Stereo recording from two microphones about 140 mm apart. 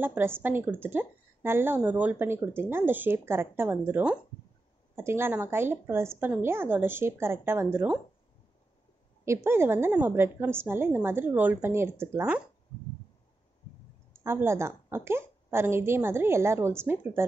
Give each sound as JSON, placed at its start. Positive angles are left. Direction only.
{"t": 0.0, "sound": "a woman's voice", "side_deg": -15}
{"t": 9.2, "sound": "a woman's voice", "side_deg": -20}
{"t": 14.2, "sound": "a woman's voice", "side_deg": -15}